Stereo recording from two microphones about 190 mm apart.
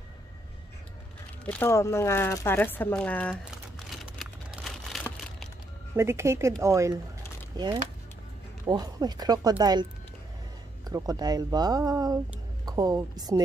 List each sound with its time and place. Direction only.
1.4 s speech: 10° left (ahead or behind)
3.4 s a sound: centre (ahead or behind)
5.9 s speech: 15° right (ahead or behind)